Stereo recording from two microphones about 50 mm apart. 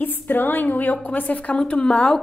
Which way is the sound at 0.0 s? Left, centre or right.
Left.